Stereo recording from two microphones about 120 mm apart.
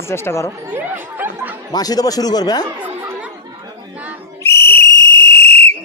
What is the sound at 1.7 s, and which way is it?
Speech, 30° left (ahead or behind).